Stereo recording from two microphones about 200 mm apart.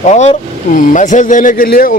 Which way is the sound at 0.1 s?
35° left (ahead or behind).